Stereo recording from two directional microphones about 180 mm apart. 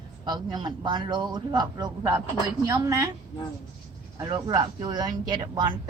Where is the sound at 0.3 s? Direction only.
25° right (ahead or behind).